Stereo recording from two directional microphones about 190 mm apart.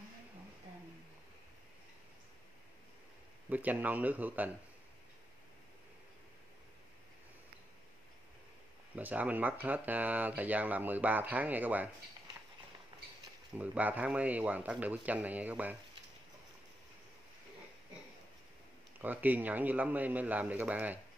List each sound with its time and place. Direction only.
3.4 s speech: 10° right (ahead or behind)
8.9 s speech: 10° right (ahead or behind)
13.6 s speech: 10° right (ahead or behind)
18.9 s speech: 10° right (ahead or behind)